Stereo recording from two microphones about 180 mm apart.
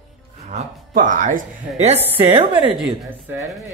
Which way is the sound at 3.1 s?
10° right (ahead or behind).